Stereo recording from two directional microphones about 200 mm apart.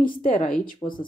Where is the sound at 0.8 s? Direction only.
20° left (ahead or behind).